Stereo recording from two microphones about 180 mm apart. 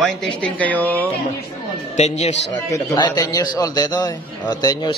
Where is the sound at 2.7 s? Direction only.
25° left (ahead or behind).